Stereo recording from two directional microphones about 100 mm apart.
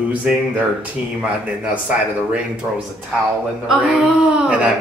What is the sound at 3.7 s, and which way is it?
Speech, 10° right (ahead or behind).